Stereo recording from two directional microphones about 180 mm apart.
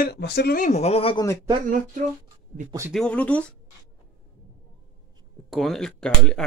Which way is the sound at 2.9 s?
5° left (ahead or behind).